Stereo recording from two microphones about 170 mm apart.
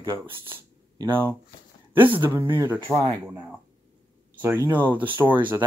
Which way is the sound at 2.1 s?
15° right (ahead or behind).